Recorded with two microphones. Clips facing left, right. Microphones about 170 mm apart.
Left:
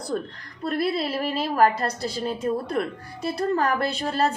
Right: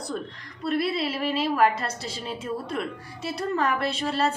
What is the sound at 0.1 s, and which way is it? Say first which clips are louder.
A woman's voice: left 4 dB; 45° left (ahead or behind).